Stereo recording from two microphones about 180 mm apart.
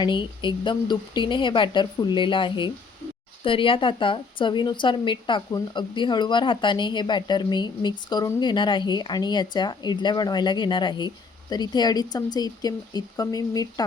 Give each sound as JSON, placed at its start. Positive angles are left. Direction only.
{"t": 0.0, "sound": "speech", "side_deg": 25}